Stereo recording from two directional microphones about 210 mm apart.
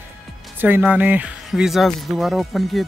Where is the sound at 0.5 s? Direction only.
10° right (ahead or behind).